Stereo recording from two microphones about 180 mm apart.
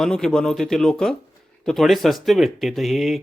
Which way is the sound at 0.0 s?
Centre (ahead or behind).